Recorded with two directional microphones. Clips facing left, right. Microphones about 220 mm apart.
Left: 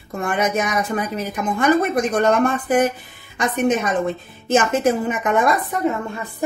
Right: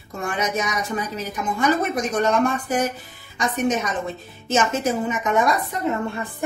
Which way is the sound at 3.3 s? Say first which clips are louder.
Left 3 dB; 55° left (ahead or behind).